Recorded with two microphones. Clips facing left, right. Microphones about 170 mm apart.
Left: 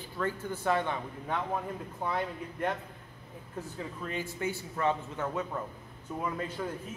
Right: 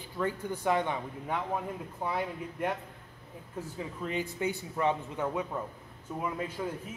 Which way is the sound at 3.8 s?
15° right (ahead or behind).